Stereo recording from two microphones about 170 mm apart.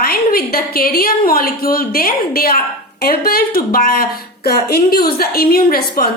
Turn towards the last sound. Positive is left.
turn(degrees=65)  # may be behind; listen again after turning